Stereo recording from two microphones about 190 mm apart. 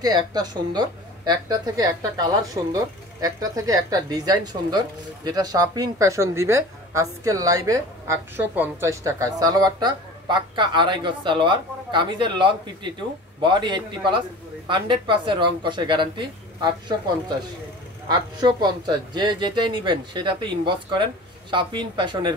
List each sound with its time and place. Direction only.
0.0 s a woman's voice: 20° right (ahead or behind)
18.1 s a woman's voice: 20° right (ahead or behind)